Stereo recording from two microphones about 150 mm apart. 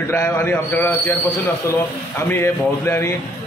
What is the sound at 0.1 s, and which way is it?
A man's voice, 15° left (ahead or behind).